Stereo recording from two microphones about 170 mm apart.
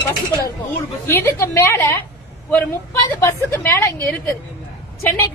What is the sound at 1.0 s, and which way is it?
Speech, 15° left (ahead or behind).